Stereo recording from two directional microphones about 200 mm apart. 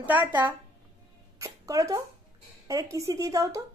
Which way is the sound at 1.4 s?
15° right (ahead or behind).